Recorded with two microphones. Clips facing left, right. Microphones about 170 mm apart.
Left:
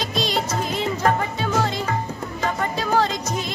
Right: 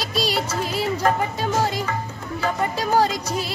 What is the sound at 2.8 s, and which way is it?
Music, 40° right (ahead or behind).